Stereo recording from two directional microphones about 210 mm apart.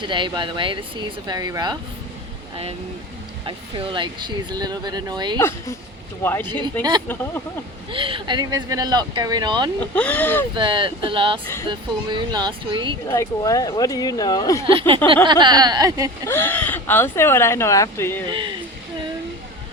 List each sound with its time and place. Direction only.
0.1 s speech: 20° right (ahead or behind)
3.4 s speech: 25° right (ahead or behind)
5.4 s speech: 10° left (ahead or behind)
7.9 s speech: 25° right (ahead or behind)
9.8 s speech: 5° left (ahead or behind)
10.5 s speech: 25° right (ahead or behind)
13.1 s speech: 15° left (ahead or behind)
14.7 s speech: 25° right (ahead or behind)
16.2 s speech: 10° left (ahead or behind)
18.3 s speech: 20° right (ahead or behind)